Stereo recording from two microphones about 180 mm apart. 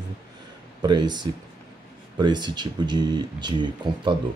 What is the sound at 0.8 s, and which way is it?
Speech, 25° right (ahead or behind).